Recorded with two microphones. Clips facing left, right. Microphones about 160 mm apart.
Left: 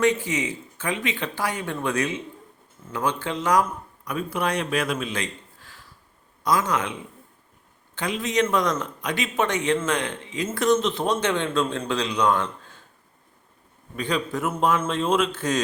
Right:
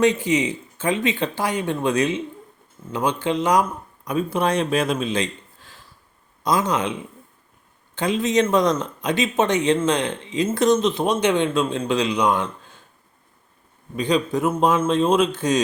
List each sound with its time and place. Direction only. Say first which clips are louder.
0.0 s speech: right 4 dB; 20° right (ahead or behind)
7.9 s speech: right 5 dB; 25° right (ahead or behind)
13.9 s speech: right 6 dB; 15° right (ahead or behind)